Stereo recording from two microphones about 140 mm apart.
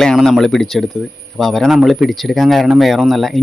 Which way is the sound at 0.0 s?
5° left (ahead or behind).